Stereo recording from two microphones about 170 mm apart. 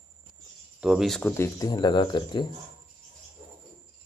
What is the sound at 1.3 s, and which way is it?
Speech, 20° left (ahead or behind).